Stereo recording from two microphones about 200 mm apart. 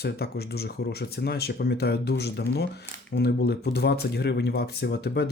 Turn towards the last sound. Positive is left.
turn(degrees=55)  # may be behind; listen again after turning